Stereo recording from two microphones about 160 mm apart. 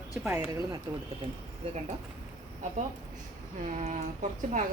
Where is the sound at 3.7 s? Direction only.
50° right (ahead or behind).